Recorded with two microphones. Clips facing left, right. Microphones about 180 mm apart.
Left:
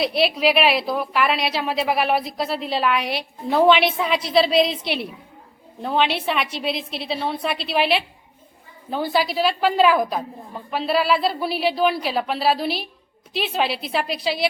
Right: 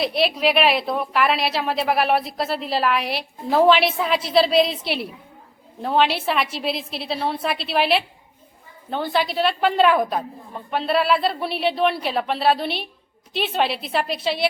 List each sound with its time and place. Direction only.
0.0 s a woman's voice: centre (ahead or behind)
9.1 s a woman's voice: centre (ahead or behind)